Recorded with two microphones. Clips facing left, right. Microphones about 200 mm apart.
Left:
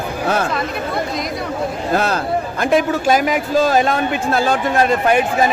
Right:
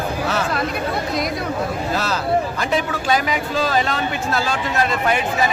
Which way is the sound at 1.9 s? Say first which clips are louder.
Left 3 dB; 55° left (ahead or behind).